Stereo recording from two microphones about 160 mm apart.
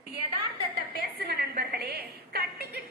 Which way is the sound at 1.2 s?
80° right.